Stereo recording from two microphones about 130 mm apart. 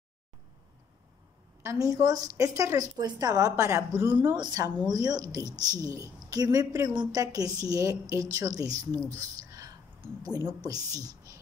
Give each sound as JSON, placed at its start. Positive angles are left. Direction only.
{"t": 1.6, "sound": "a woman's voice", "side_deg": -25}